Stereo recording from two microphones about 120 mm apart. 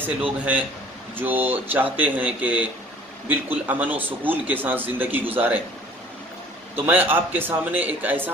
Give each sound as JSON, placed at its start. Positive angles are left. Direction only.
{"t": 0.0, "sound": "a man's voice", "side_deg": -15}
{"t": 6.7, "sound": "a man's voice", "side_deg": -15}